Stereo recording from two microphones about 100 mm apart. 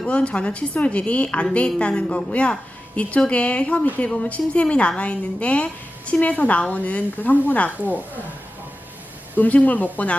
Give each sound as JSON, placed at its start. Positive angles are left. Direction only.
{"t": 0.0, "sound": "a woman's voice", "side_deg": 10}
{"t": 9.4, "sound": "a woman's voice", "side_deg": 15}